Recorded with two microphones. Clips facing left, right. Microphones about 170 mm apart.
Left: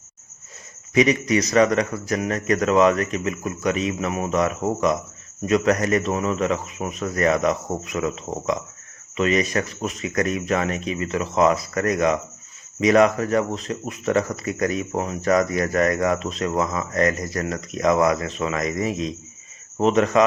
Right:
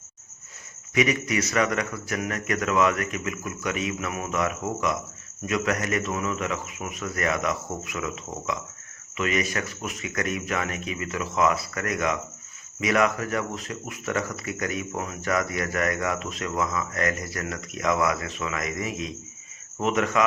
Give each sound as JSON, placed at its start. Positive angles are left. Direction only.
{"t": 0.9, "sound": "speech", "side_deg": 35}